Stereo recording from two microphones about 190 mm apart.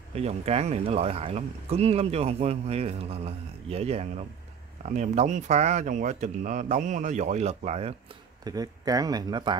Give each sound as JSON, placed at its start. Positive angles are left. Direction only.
{"t": 0.1, "sound": "speech", "side_deg": -35}
{"t": 8.5, "sound": "speech", "side_deg": -20}